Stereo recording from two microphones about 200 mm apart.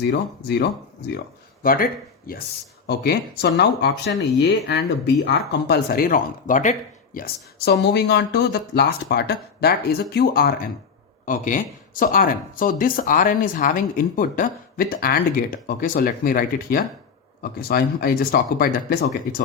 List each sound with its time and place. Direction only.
1.6 s speech: 45° left (ahead or behind)